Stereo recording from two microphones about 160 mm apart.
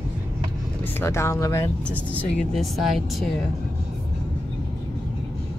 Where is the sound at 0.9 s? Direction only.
15° left (ahead or behind).